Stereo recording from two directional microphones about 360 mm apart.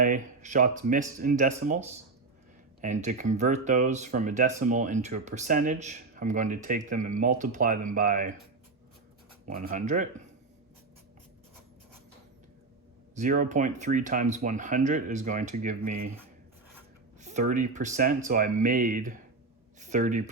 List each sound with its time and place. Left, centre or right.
0.0 s speech: right
2.8 s speech: centre
9.5 s speech: right
13.1 s speech: right
17.2 s speech: centre